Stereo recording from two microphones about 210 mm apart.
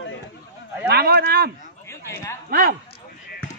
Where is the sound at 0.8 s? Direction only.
50° right (ahead or behind).